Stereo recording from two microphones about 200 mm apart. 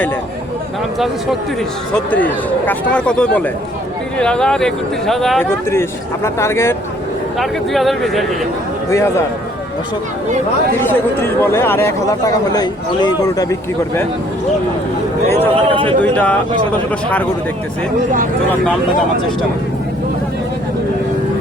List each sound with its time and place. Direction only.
0.9 s speech: centre (ahead or behind)
6.2 s speech: 15° left (ahead or behind)
7.3 s speech: centre (ahead or behind)
8.9 s speech: 15° left (ahead or behind)
10.8 s speech: 10° left (ahead or behind)
15.4 s speech: 25° right (ahead or behind)
16.0 s speech: 5° left (ahead or behind)
18.6 s speech: 5° left (ahead or behind)